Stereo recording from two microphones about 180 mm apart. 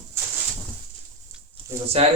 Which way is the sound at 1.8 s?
35° right (ahead or behind).